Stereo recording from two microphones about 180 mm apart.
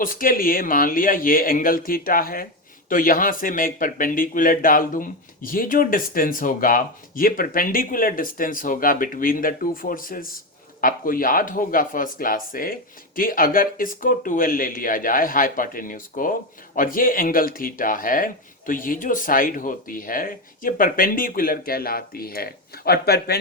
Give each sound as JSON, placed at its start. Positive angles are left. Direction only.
{"t": 0.0, "sound": "speech", "side_deg": 50}